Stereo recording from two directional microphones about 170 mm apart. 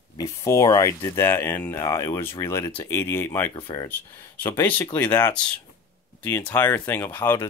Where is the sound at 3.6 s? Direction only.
30° left (ahead or behind).